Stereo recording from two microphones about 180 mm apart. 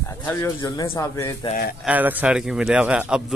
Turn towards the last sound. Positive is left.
turn(degrees=-5)  # may be behind; listen again after turning